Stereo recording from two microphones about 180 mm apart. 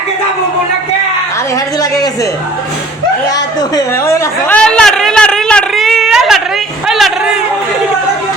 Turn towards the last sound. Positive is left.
turn(degrees=-5)  # may be behind; listen again after turning